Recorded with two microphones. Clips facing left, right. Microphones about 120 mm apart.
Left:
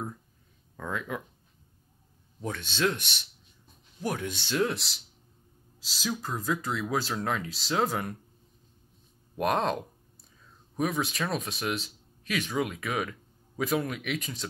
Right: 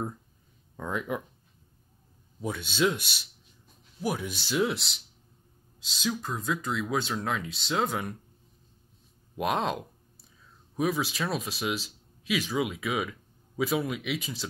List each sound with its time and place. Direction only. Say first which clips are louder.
0.7 s speech: right 2 dB; 20° right (ahead or behind)
2.4 s speech: right 2 dB; 10° right (ahead or behind)
9.4 s speech: left 1 dB; centre (ahead or behind)
10.8 s speech: right 1 dB; centre (ahead or behind)